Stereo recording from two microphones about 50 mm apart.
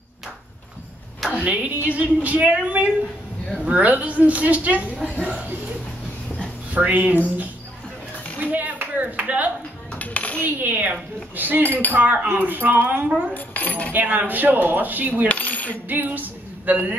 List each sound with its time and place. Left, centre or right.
1.3 s speech: right
6.7 s speech: right
8.4 s a sound: right
9.9 s dishes: left
10.4 s speech: right
11.6 s speech: left
11.9 s speech: right
13.3 s cutlery: left
13.9 s speech: right
15.2 s coin: left
15.9 s a sound: right